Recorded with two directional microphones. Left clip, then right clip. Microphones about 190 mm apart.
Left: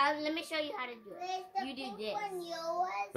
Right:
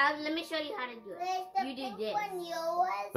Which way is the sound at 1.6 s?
35° left (ahead or behind).